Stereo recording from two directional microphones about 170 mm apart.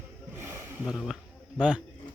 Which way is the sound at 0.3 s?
15° right (ahead or behind).